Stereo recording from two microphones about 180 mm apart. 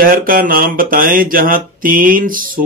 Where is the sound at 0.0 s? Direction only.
50° right (ahead or behind).